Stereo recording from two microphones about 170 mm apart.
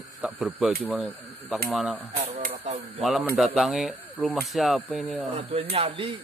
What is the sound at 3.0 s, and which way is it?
Speech, centre (ahead or behind).